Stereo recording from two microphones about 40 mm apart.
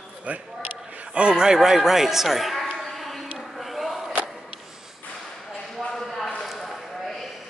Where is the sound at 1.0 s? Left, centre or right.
Right; by 2.6 s centre.